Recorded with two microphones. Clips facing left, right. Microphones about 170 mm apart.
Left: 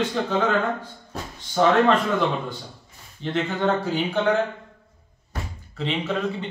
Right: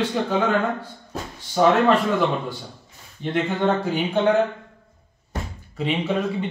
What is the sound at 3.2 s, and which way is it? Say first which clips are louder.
A man's voice: right 2 dB; 15° right (ahead or behind).